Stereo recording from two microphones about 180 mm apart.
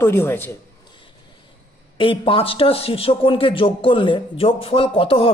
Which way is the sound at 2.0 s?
30° left (ahead or behind).